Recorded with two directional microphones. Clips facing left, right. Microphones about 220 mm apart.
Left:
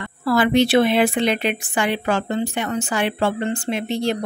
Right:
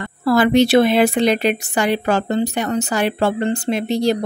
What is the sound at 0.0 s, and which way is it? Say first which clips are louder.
A woman's voice: right 3 dB; 40° right (ahead or behind).